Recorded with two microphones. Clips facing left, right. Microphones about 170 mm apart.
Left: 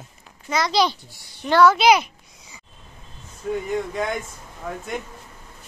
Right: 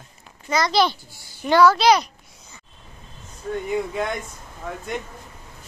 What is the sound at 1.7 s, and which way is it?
Speech, 10° left (ahead or behind).